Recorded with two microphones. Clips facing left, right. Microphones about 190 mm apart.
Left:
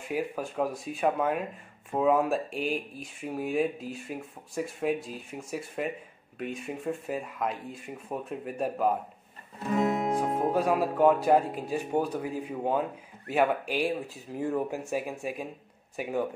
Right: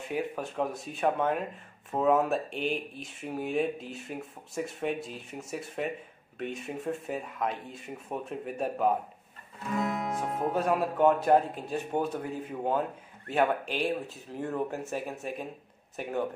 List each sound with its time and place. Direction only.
0.0 s speech: 5° left (ahead or behind)
9.7 s music: 30° left (ahead or behind)
10.5 s speech: 5° left (ahead or behind)